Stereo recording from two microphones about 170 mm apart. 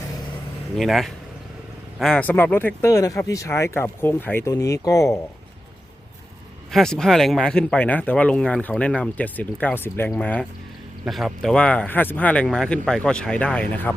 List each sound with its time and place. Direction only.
0.8 s speech: centre (ahead or behind); by 5.2 s 15° left (ahead or behind)
6.7 s speech: 5° left (ahead or behind)